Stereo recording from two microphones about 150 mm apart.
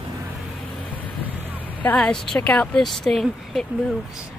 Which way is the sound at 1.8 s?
10° left (ahead or behind).